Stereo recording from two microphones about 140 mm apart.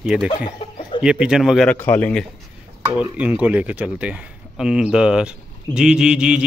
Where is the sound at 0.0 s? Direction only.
5° right (ahead or behind).